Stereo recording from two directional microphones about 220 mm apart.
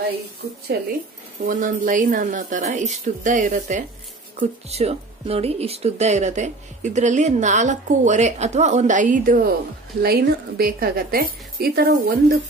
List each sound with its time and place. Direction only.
0.7 s a woman's voice: 45° right (ahead or behind)